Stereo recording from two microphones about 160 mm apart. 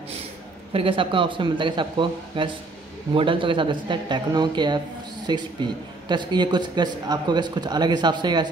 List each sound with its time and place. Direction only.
0.7 s speech: 35° right (ahead or behind)